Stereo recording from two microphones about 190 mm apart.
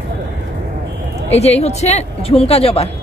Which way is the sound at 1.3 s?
35° left (ahead or behind).